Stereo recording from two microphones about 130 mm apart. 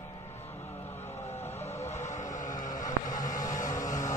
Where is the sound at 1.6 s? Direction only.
60° left (ahead or behind); by 3.2 s 80° left.